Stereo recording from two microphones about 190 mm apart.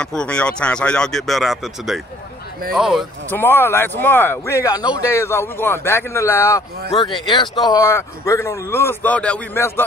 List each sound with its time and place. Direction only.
0.0 s speech: 5° left (ahead or behind)
3.3 s speech: 10° left (ahead or behind)
6.9 s speech: 25° left (ahead or behind)